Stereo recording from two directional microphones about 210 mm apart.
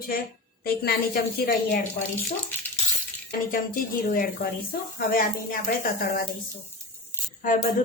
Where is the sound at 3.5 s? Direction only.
45° left (ahead or behind).